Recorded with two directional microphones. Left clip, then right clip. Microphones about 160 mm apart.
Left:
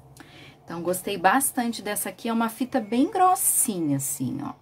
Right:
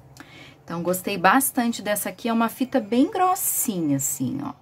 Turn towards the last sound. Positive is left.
turn(degrees=-10)  # may be behind; listen again after turning